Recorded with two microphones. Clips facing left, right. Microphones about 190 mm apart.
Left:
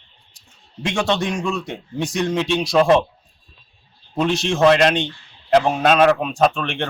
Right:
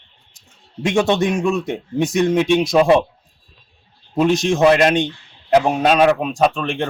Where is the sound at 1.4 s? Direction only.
20° right (ahead or behind).